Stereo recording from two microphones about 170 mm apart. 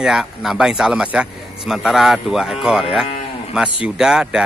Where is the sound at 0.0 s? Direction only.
Centre (ahead or behind).